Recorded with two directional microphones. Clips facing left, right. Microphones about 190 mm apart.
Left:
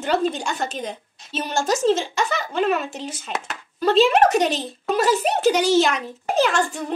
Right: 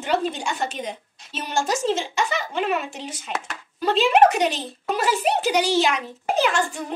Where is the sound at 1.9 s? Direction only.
40° left (ahead or behind).